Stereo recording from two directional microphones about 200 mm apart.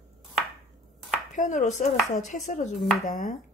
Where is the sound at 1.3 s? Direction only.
40° left (ahead or behind).